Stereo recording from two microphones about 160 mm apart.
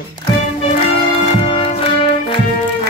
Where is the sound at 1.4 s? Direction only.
35° left (ahead or behind).